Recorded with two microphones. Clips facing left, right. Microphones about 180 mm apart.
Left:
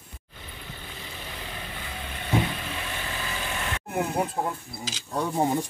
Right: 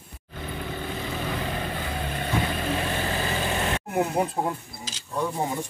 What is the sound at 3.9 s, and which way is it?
Speech, 10° right (ahead or behind).